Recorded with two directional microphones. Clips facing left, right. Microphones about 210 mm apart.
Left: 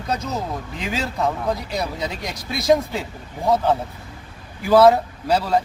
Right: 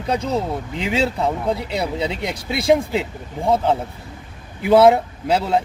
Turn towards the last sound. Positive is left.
turn(degrees=-25)  # may be behind; listen again after turning